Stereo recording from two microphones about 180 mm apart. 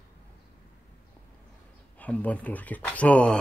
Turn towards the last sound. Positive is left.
turn(degrees=5)  # may be behind; listen again after turning